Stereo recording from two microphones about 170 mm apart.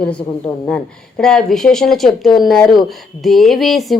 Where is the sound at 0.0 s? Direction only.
5° left (ahead or behind).